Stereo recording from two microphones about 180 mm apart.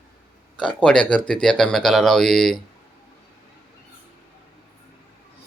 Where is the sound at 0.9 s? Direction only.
5° left (ahead or behind).